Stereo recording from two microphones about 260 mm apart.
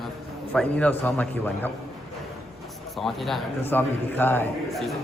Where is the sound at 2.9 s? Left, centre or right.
Centre.